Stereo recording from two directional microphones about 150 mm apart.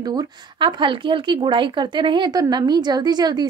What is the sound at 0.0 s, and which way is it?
Speech, 25° right (ahead or behind).